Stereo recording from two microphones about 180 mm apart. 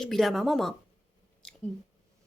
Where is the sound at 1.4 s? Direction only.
5° left (ahead or behind).